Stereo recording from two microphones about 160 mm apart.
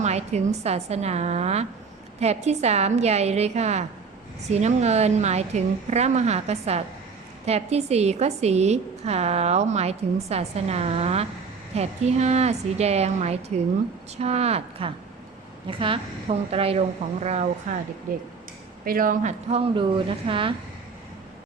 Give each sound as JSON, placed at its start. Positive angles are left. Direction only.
{"t": 0.0, "sound": "a woman's voice", "side_deg": -45}
{"t": 17.7, "sound": "a woman's voice", "side_deg": -50}
{"t": 18.9, "sound": "speech", "side_deg": -60}
{"t": 19.5, "sound": "a woman's voice", "side_deg": -35}